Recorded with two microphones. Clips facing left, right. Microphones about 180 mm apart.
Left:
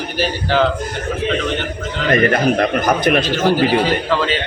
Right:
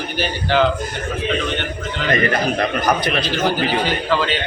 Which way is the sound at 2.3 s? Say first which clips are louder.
Left 4 dB; 50° left (ahead or behind).